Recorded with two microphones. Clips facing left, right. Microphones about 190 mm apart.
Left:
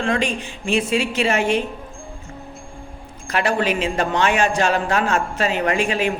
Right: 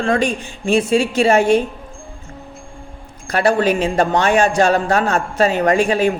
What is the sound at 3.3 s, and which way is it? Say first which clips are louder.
A man's voice: right 5 dB; 35° right (ahead or behind).